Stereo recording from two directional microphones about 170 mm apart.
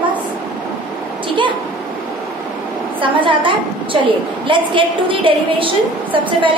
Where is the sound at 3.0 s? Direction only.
30° right (ahead or behind).